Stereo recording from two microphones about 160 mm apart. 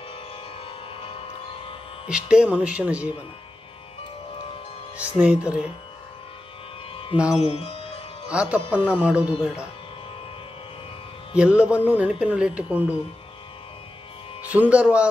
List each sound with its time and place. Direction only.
2.0 s speech: 5° right (ahead or behind)
4.9 s speech: 10° right (ahead or behind)
6.9 s music: 35° left (ahead or behind)
8.3 s speech: 5° right (ahead or behind)
11.3 s speech: 5° right (ahead or behind)
14.4 s speech: 10° right (ahead or behind)